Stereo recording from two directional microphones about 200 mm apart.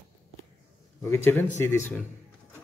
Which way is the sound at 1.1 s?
10° left (ahead or behind).